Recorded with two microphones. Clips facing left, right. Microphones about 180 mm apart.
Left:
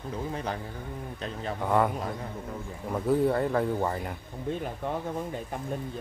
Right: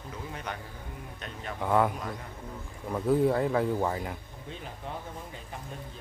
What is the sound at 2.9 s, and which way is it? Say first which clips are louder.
A man's voice: even; centre (ahead or behind).